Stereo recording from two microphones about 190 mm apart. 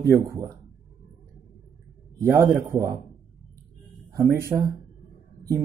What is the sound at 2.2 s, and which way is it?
Speech, 15° right (ahead or behind).